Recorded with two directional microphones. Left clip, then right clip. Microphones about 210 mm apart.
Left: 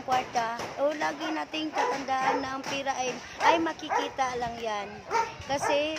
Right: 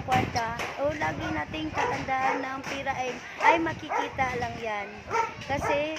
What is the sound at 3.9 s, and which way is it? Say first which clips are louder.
Speech: left 1 dB; 45° left (ahead or behind).